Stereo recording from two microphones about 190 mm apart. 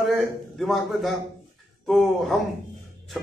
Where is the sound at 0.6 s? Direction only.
Centre (ahead or behind).